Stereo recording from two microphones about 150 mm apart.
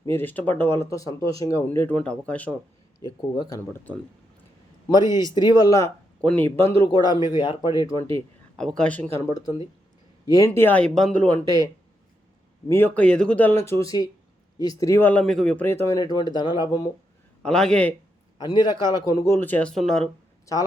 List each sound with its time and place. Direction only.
0.0 s speech: 15° left (ahead or behind)
5.1 s speech: 30° left (ahead or behind)
6.2 s speech: 10° left (ahead or behind)
6.9 s speech: 30° left (ahead or behind)
8.5 s speech: 5° left (ahead or behind)
12.6 s speech: 15° left (ahead or behind)
17.4 s speech: 5° left (ahead or behind)
18.3 s speech: 30° left (ahead or behind); by 20.1 s 5° left (ahead or behind)
20.5 s speech: 20° left (ahead or behind)